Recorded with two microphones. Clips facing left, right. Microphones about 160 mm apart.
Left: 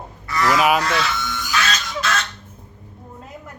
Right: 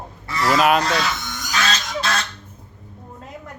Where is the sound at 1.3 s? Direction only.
40° right (ahead or behind).